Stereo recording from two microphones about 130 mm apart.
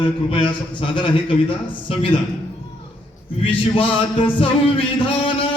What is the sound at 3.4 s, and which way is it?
Music, 45° left (ahead or behind).